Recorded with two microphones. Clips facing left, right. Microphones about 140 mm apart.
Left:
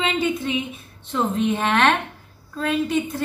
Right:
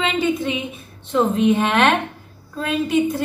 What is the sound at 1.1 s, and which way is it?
A woman's voice, 5° right (ahead or behind).